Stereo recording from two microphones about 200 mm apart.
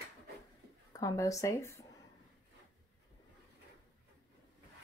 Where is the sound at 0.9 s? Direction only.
15° left (ahead or behind).